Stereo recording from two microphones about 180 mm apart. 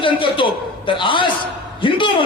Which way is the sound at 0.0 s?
30° left (ahead or behind).